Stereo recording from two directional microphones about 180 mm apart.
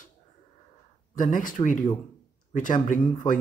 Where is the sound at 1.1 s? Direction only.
45° left (ahead or behind).